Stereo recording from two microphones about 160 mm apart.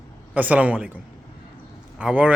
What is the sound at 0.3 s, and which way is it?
Speech, 10° right (ahead or behind).